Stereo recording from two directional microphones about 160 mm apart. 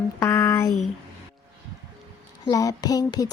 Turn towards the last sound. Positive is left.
turn(degrees=25)  # may be behind; listen again after turning